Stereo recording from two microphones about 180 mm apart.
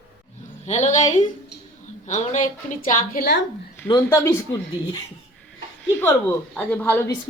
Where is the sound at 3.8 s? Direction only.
20° left (ahead or behind).